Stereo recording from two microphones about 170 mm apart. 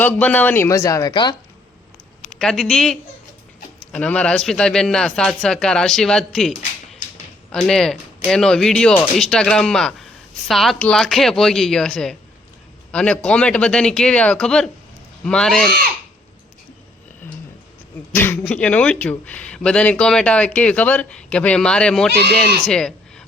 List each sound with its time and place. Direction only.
0.0 s speech: 10° left (ahead or behind); by 1.4 s 25° left (ahead or behind)
2.4 s a man's voice: 5° left (ahead or behind)
7.5 s a man's voice: 5° left (ahead or behind)
18.1 s speech: 10° left (ahead or behind)
22.6 s a sound: 5° left (ahead or behind)